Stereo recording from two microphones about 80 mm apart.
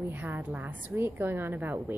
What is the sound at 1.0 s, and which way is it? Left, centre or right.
Speech, right.